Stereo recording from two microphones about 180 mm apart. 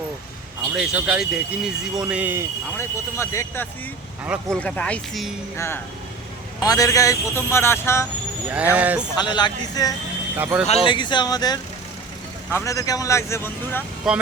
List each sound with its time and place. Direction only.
0.8 s speech: 5° right (ahead or behind)
2.7 s speech: 15° left (ahead or behind)
4.3 s speech: 5° left (ahead or behind)
5.5 s speech: 15° left (ahead or behind)
8.4 s speech: 10° right (ahead or behind)
9.1 s speech: 25° left (ahead or behind)
10.3 s speech: 10° right (ahead or behind)
10.8 s speech: 25° left (ahead or behind)
14.0 s speech: 5° right (ahead or behind)